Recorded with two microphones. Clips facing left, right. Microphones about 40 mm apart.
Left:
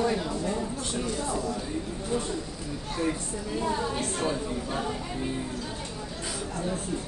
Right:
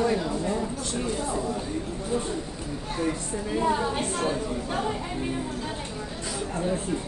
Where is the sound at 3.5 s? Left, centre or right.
Right.